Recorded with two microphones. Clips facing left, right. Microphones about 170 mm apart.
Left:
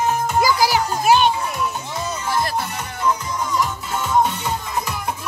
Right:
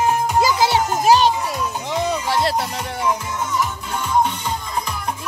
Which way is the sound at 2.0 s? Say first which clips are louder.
Right 3 dB; 70° right (ahead or behind).